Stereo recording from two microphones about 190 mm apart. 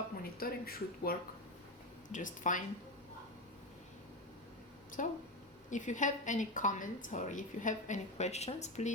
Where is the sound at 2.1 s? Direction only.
40° left (ahead or behind).